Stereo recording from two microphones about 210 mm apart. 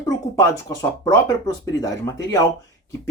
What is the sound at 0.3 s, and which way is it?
Speech, 15° left (ahead or behind).